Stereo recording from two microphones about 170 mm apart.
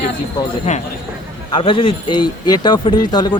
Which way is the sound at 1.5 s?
30° left (ahead or behind).